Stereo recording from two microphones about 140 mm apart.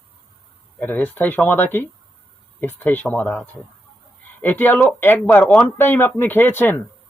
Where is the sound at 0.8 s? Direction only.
15° left (ahead or behind).